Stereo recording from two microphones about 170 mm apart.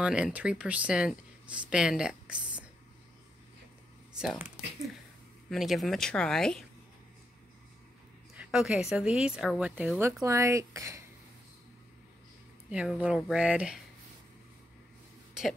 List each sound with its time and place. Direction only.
0.0 s speech: 5° right (ahead or behind)
4.2 s a woman's voice: 5° right (ahead or behind)
5.5 s a woman's voice: centre (ahead or behind)
8.4 s a woman's voice: 5° right (ahead or behind)
12.6 s a woman's voice: 5° right (ahead or behind)